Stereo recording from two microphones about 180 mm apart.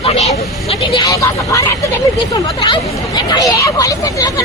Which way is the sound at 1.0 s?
20° left (ahead or behind).